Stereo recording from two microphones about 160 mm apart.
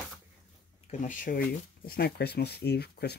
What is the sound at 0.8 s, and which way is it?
Speech, 50° left (ahead or behind).